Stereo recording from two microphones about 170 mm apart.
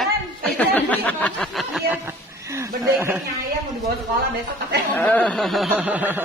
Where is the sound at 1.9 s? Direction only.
15° right (ahead or behind).